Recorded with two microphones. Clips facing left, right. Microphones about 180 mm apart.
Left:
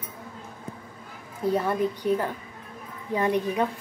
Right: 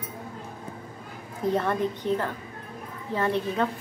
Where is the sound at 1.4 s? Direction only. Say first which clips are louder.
Left 1 dB; 10° left (ahead or behind).